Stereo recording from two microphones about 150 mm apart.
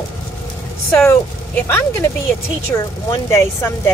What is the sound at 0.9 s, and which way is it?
Speech, 10° left (ahead or behind).